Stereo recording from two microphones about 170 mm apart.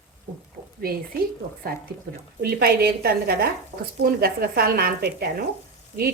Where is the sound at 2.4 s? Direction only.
65° right (ahead or behind).